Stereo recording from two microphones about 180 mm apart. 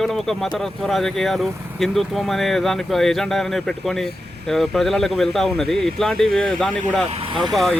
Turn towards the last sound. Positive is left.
turn(degrees=0)  # may be behind; listen again after turning